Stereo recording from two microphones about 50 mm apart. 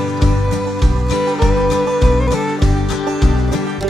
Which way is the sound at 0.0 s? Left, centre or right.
Centre.